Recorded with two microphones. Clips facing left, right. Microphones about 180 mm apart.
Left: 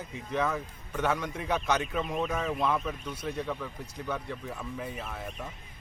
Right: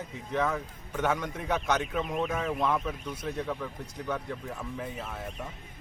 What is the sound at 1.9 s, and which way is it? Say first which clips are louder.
A man's voice: even; 5° right (ahead or behind).